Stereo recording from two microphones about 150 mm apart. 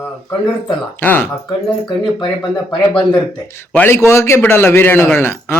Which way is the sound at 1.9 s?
30° left (ahead or behind).